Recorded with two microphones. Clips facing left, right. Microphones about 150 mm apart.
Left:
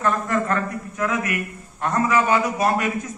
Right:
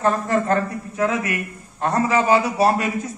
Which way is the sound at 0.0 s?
30° right (ahead or behind).